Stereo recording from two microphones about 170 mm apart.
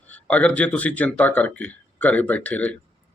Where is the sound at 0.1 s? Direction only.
10° left (ahead or behind).